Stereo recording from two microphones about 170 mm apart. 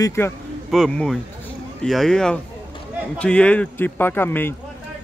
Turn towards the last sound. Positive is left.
turn(degrees=10)  # may be behind; listen again after turning